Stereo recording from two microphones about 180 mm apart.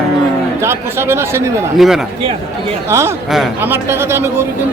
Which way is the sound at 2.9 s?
15° right (ahead or behind).